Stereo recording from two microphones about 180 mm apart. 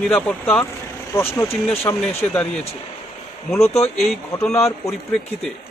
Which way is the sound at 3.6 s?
35° left (ahead or behind).